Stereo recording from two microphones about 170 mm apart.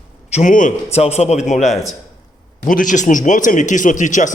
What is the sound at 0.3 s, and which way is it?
A man's voice, 50° left (ahead or behind).